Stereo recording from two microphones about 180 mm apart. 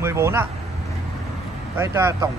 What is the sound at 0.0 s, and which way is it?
Speech, 15° right (ahead or behind).